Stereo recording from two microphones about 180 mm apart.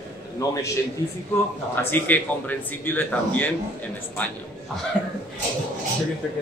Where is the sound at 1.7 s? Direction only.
10° left (ahead or behind).